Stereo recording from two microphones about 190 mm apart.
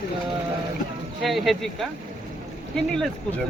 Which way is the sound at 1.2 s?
Centre (ahead or behind).